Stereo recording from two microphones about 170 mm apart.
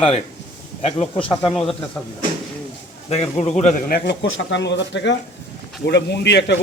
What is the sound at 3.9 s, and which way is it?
Speech, 90° left.